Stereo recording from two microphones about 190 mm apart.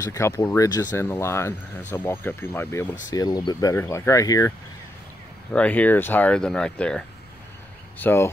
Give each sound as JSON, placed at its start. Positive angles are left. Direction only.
{"t": 0.0, "sound": "speech", "side_deg": 15}